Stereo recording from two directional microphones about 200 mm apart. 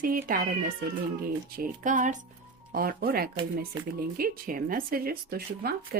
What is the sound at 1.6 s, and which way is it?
Speech, 40° right (ahead or behind).